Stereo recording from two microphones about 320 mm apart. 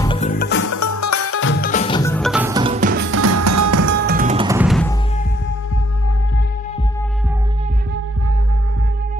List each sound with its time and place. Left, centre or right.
0.0 s music: centre
0.7 s music: left
1.6 s music: left; by 3.8 s right
3.8 s music: right
4.5 s music: centre